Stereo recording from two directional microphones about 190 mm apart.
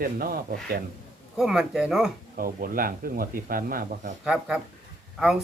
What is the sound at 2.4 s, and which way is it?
Speech, 50° right (ahead or behind).